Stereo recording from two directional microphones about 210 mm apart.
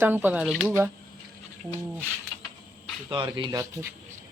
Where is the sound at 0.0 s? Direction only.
10° right (ahead or behind).